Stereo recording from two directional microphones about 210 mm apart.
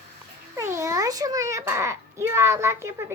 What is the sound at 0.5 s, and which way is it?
A child's voice, 15° right (ahead or behind).